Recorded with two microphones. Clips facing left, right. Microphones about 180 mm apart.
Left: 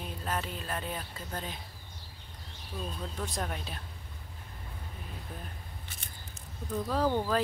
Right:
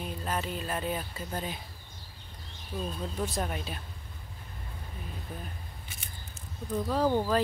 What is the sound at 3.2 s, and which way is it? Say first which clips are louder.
Speech: right 4 dB; 5° right (ahead or behind).